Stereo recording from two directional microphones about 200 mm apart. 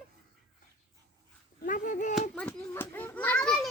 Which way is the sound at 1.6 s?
40° left (ahead or behind).